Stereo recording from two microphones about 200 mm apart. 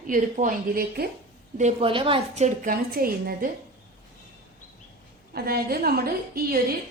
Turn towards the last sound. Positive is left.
turn(degrees=-50)  # may be behind; listen again after turning